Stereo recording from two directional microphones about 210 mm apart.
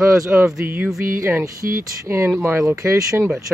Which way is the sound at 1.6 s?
45° right (ahead or behind).